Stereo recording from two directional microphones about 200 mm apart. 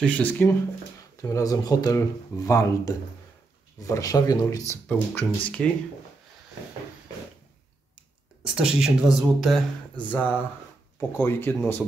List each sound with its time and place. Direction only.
0.0 s speech: 10° left (ahead or behind)
8.5 s speech: 5° right (ahead or behind)